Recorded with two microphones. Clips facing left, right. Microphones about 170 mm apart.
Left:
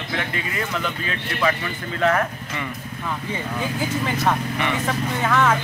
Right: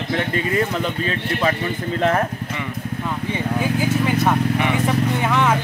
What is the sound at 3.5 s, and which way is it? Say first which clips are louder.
Speech: right 5 dB; 5° right (ahead or behind).